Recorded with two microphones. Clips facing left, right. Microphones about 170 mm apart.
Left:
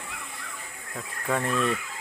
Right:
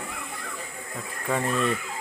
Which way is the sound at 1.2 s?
Centre (ahead or behind).